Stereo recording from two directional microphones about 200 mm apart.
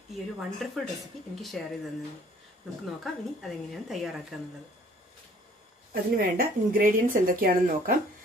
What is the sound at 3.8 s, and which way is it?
Speech, centre (ahead or behind).